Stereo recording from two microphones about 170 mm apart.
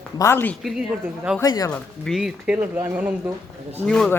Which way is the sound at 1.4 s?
20° left (ahead or behind).